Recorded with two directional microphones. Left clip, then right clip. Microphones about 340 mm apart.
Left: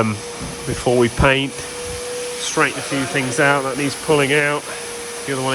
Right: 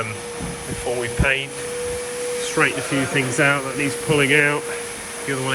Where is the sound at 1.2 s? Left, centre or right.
Left.